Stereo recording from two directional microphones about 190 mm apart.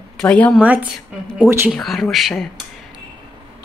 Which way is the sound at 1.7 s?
Centre (ahead or behind).